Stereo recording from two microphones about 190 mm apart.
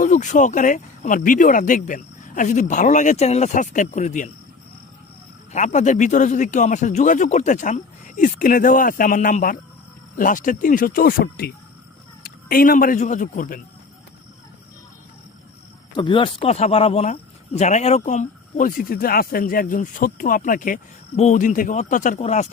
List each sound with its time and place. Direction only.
0.0 s speech: 40° left (ahead or behind)
5.5 s a man's voice: 40° left (ahead or behind)
16.0 s speech: 25° left (ahead or behind)